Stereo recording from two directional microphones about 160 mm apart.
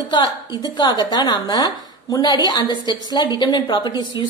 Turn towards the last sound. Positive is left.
turn(degrees=30)  # may be behind; listen again after turning